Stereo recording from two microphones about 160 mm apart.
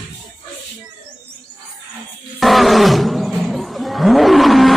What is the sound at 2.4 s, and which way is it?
Roar, centre (ahead or behind).